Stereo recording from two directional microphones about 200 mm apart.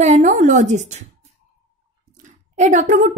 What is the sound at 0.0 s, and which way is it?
A woman's voice, 35° right (ahead or behind).